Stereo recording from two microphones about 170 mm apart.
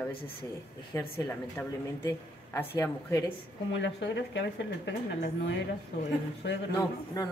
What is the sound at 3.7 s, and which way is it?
Speech, 90° left.